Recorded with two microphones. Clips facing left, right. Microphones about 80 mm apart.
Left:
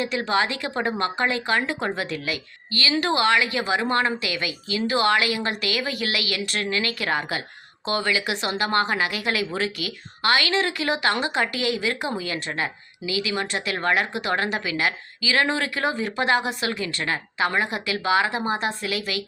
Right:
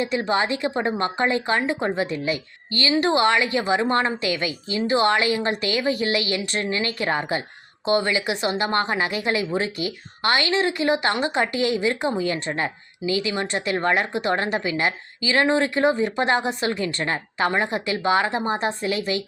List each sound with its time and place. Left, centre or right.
0.0 s a woman's voice: right